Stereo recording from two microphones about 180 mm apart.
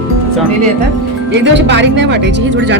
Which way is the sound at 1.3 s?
80° right.